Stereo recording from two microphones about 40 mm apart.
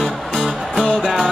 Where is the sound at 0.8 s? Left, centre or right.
Centre.